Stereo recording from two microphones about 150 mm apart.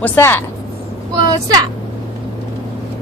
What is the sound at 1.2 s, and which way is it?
Speech, 25° right (ahead or behind).